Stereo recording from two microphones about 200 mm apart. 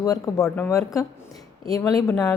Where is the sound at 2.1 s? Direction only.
10° left (ahead or behind).